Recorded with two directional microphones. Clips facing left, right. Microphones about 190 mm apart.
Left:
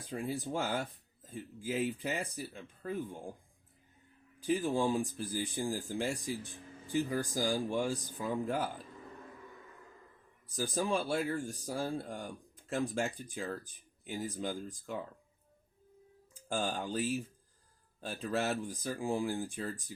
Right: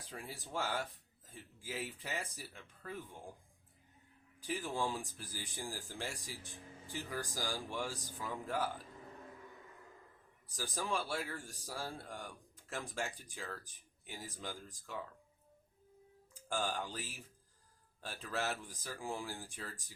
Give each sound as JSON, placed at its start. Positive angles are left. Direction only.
{"t": 0.1, "sound": "speech", "side_deg": 20}
{"t": 4.4, "sound": "speech", "side_deg": 20}
{"t": 10.6, "sound": "speech", "side_deg": 20}
{"t": 16.5, "sound": "speech", "side_deg": 20}